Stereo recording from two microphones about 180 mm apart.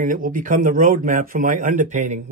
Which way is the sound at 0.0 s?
50° right (ahead or behind).